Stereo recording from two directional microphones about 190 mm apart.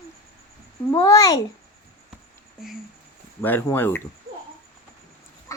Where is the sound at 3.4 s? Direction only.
10° left (ahead or behind).